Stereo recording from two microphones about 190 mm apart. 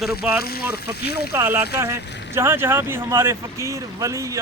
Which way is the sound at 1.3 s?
10° right (ahead or behind).